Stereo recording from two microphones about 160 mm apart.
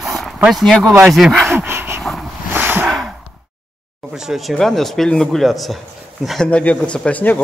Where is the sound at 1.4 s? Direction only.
15° right (ahead or behind).